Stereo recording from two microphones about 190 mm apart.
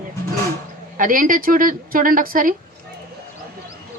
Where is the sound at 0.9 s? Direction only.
45° right (ahead or behind).